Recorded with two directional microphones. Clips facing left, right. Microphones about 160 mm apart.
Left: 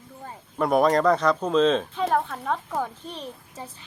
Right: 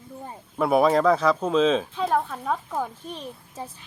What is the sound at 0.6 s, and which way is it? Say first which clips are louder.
Speech: right 1 dB; 5° right (ahead or behind).